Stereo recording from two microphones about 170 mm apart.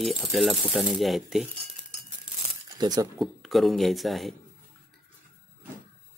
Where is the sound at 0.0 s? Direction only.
Centre (ahead or behind).